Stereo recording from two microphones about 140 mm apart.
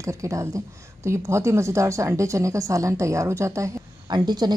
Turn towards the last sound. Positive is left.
turn(degrees=-30)  # may be behind; listen again after turning